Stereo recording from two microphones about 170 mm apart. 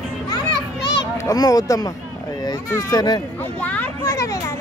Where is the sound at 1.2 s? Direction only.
20° left (ahead or behind).